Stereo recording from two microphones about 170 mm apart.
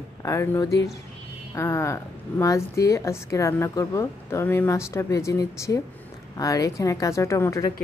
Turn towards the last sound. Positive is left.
turn(degrees=20)  # may be behind; listen again after turning